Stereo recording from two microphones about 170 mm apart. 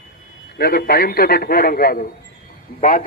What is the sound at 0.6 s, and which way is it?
A man's voice, 65° left (ahead or behind).